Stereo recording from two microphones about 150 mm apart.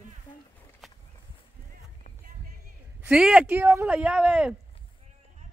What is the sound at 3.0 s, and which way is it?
Speech, 5° right (ahead or behind).